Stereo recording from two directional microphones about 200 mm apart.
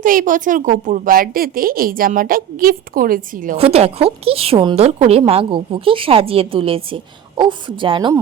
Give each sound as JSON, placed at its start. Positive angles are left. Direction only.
{"t": 0.0, "sound": "a woman's voice", "side_deg": -45}
{"t": 3.6, "sound": "a woman's voice", "side_deg": -30}